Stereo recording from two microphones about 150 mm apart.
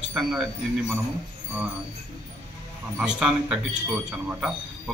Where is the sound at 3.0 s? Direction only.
5° right (ahead or behind).